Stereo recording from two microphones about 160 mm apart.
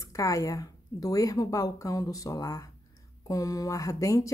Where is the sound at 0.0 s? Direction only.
20° left (ahead or behind).